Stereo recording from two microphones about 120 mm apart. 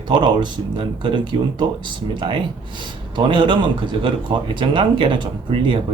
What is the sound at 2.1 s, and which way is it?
Speech, 40° right (ahead or behind).